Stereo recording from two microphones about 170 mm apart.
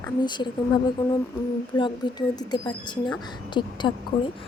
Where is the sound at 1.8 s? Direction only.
25° left (ahead or behind).